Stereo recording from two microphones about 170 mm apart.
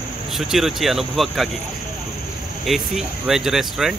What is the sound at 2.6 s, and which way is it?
Speech, centre (ahead or behind).